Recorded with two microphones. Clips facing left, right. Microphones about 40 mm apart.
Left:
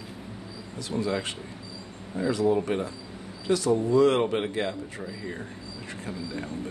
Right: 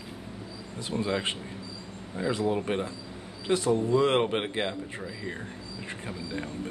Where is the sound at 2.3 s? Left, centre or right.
Right.